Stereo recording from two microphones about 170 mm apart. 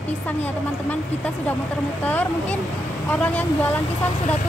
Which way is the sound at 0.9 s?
10° left (ahead or behind).